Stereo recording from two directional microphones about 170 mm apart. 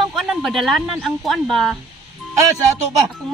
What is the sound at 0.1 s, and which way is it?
A woman's voice, 5° right (ahead or behind).